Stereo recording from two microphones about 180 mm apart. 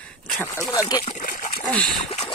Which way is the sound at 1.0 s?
45° left (ahead or behind).